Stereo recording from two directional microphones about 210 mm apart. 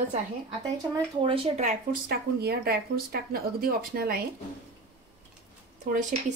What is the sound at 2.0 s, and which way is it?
Speech, 50° right (ahead or behind).